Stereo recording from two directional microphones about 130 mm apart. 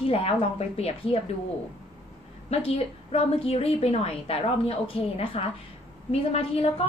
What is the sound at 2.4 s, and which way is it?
A woman's voice, 50° left (ahead or behind).